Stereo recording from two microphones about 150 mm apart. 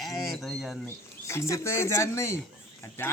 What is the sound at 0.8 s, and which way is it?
Speech, 20° left (ahead or behind).